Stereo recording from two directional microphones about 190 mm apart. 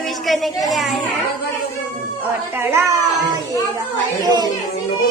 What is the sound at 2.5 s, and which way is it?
Child singing, 15° right (ahead or behind).